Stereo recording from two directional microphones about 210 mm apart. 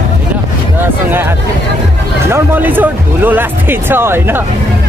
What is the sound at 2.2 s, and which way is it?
Music, 10° right (ahead or behind).